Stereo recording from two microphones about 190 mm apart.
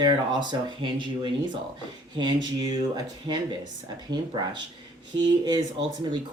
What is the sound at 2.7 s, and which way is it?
Speech, 20° right (ahead or behind).